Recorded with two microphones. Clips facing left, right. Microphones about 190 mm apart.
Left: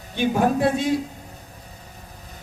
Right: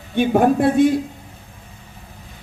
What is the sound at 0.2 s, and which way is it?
Speech, 55° right (ahead or behind).